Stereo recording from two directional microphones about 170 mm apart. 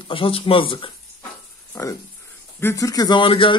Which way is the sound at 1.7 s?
20° left (ahead or behind).